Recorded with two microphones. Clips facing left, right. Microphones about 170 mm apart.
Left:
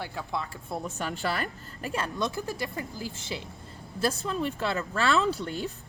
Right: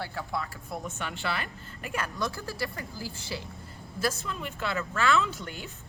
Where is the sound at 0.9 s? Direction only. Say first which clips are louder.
Left 3 dB; 40° left (ahead or behind).